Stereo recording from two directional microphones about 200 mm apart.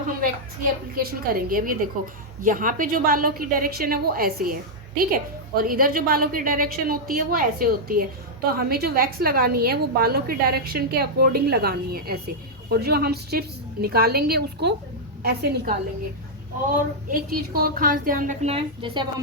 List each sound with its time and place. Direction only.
0.2 s a woman's voice: 45° right (ahead or behind)
17.1 s a woman's voice: 45° right (ahead or behind); by 19.0 s 30° right (ahead or behind)